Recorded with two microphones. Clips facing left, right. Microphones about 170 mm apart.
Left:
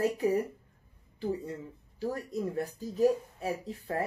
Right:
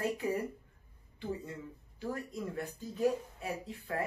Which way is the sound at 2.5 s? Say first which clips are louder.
Left 6 dB; 35° left (ahead or behind).